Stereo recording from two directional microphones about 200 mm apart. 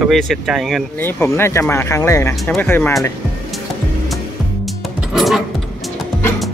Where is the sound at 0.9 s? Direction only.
10° left (ahead or behind).